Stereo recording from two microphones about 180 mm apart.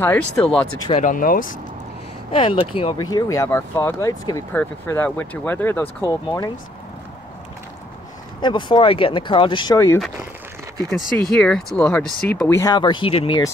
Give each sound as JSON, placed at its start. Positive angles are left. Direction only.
{"t": 0.0, "sound": "speech", "side_deg": 10}
{"t": 0.5, "sound": "speech", "side_deg": 30}
{"t": 1.0, "sound": "speech", "side_deg": 50}
{"t": 2.3, "sound": "speech", "side_deg": 30}
{"t": 8.4, "sound": "speech", "side_deg": 25}
{"t": 10.9, "sound": "speech", "side_deg": 5}
{"t": 12.4, "sound": "speech", "side_deg": 20}